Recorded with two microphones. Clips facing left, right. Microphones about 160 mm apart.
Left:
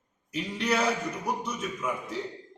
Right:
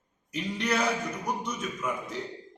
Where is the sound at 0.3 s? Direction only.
5° left (ahead or behind).